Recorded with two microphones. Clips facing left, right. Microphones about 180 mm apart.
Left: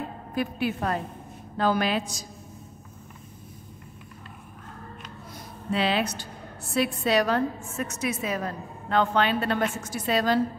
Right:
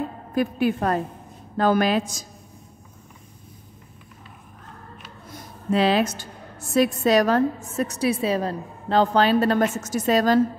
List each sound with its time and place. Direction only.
0.3 s a woman's voice: 45° right (ahead or behind)
5.7 s a woman's voice: 40° right (ahead or behind)